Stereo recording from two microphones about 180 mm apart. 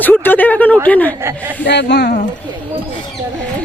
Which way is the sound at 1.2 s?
10° right (ahead or behind).